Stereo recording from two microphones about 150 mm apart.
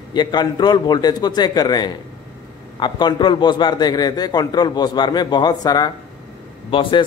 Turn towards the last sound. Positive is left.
turn(degrees=35)  # may be behind; listen again after turning